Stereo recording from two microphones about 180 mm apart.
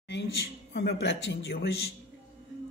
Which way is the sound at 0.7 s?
70° left (ahead or behind).